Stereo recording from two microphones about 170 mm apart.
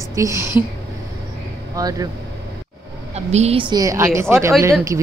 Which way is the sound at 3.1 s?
40° right (ahead or behind).